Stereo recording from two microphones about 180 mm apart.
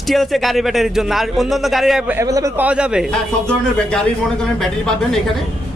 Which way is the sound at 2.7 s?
5° right (ahead or behind).